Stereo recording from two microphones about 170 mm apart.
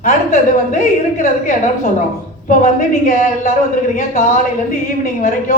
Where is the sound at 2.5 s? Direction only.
50° left (ahead or behind).